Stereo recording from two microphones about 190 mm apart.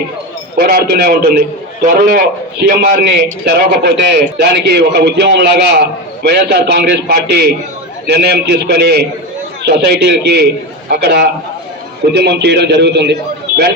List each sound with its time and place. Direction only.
0.5 s a man's voice: 55° right (ahead or behind)